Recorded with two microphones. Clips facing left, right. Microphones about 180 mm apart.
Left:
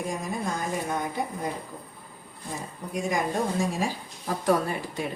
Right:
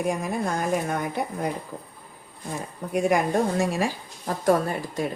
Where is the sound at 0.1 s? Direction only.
65° right (ahead or behind).